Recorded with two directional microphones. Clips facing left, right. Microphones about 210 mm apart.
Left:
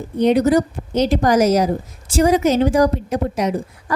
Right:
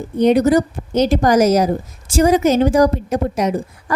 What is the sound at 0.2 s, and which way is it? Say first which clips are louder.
A woman's voice: right 2 dB; 45° right (ahead or behind).